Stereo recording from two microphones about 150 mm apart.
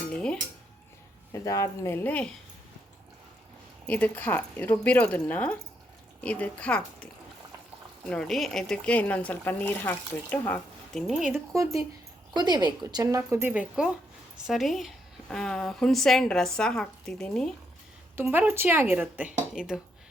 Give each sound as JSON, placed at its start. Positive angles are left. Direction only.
{"t": 0.1, "sound": "music", "side_deg": 5}
{"t": 1.3, "sound": "speech", "side_deg": 20}
{"t": 3.8, "sound": "speech", "side_deg": 10}
{"t": 11.0, "sound": "a woman's voice", "side_deg": 0}
{"t": 11.5, "sound": "a woman's voice", "side_deg": -20}
{"t": 13.5, "sound": "a woman's voice", "side_deg": -5}
{"t": 18.2, "sound": "speech", "side_deg": -10}